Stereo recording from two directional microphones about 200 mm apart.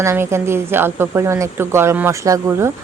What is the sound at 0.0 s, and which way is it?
A woman's voice, 15° right (ahead or behind).